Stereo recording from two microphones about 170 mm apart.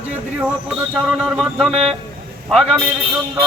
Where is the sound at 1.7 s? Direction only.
35° right (ahead or behind).